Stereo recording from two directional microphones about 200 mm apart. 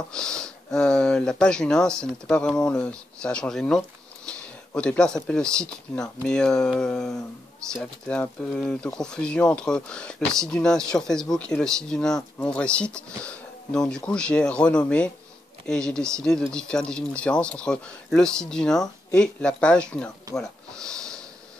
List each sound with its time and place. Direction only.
0.1 s speech: 5° left (ahead or behind)